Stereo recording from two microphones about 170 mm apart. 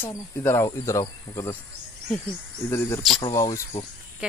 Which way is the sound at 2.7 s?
15° left (ahead or behind).